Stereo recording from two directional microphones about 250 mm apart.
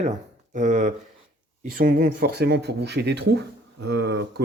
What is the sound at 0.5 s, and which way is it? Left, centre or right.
Speech, right.